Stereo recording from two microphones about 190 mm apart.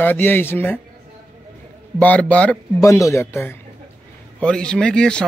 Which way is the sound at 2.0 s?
5° left (ahead or behind).